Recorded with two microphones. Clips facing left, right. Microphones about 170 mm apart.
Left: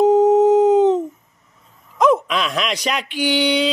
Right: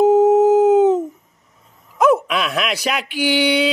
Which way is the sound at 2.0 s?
5° right (ahead or behind).